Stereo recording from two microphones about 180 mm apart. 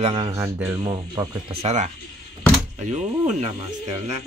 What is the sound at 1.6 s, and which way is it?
Speech, 40° right (ahead or behind).